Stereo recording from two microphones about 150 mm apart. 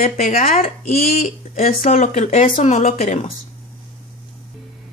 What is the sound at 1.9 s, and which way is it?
Speech, 50° left (ahead or behind).